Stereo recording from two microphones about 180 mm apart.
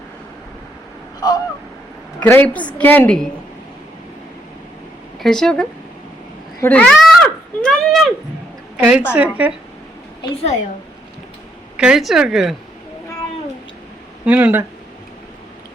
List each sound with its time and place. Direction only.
1.2 s a sound: 20° left (ahead or behind)
2.2 s a woman's voice: 10° left (ahead or behind)
5.2 s speech: 5° left (ahead or behind)
6.6 s a sound: 10° left (ahead or behind)
8.8 s speech: 5° right (ahead or behind)
11.8 s speech: 5° right (ahead or behind)
14.3 s speech: 5° right (ahead or behind)